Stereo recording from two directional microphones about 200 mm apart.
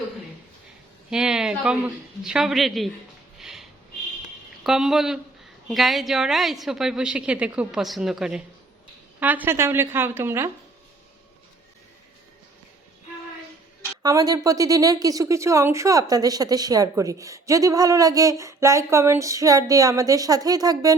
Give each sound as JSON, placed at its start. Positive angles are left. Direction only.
{"t": 1.1, "sound": "a woman's voice", "side_deg": -5}
{"t": 3.3, "sound": "a sound", "side_deg": 0}
{"t": 4.6, "sound": "a woman's voice", "side_deg": 0}
{"t": 14.0, "sound": "speech", "side_deg": -20}